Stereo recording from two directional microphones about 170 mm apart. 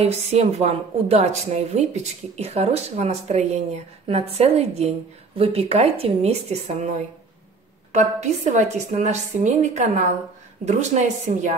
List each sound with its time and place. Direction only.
0.0 s a woman's voice: 40° right (ahead or behind)